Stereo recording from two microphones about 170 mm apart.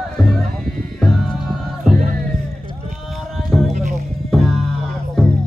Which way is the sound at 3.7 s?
45° right (ahead or behind).